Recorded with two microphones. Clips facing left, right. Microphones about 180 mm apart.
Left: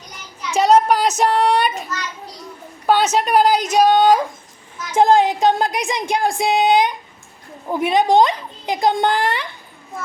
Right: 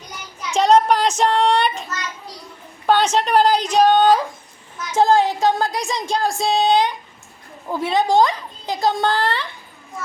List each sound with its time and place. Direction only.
0.5 s a sound: 5° left (ahead or behind)
1.2 s a woman's voice: 5° left (ahead or behind)
2.8 s a woman's voice: 5° left (ahead or behind)